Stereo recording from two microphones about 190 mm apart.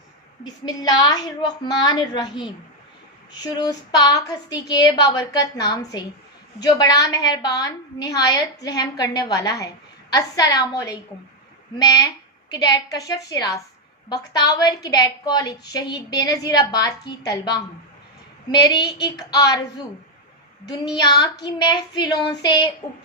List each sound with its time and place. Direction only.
0.6 s a woman's voice: 20° left (ahead or behind)
3.5 s a woman's voice: 20° left (ahead or behind)
18.6 s a woman's voice: 20° left (ahead or behind)
21.0 s a woman's voice: 20° left (ahead or behind)